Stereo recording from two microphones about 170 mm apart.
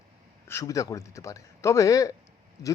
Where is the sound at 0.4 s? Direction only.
15° left (ahead or behind).